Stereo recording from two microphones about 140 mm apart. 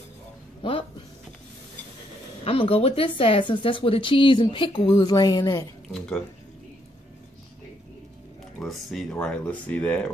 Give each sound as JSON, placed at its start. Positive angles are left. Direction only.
{"t": 0.6, "sound": "a sound", "side_deg": 40}
{"t": 2.4, "sound": "speech", "side_deg": 40}
{"t": 5.9, "sound": "speech", "side_deg": 5}
{"t": 8.5, "sound": "speech", "side_deg": 0}